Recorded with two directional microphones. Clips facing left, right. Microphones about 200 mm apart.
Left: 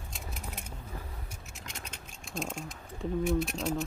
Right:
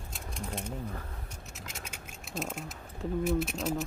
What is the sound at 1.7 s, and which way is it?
Speech, 5° right (ahead or behind).